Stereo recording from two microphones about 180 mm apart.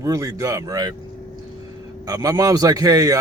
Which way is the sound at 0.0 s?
20° right (ahead or behind).